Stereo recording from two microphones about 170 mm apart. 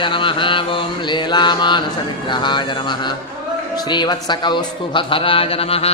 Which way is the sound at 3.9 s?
25° left (ahead or behind).